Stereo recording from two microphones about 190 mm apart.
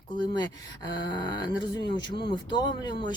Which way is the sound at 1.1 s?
25° left (ahead or behind).